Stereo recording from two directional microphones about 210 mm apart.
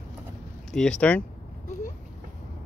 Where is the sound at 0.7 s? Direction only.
5° left (ahead or behind).